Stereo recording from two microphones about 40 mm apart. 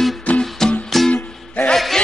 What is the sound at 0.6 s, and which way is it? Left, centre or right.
Music, centre.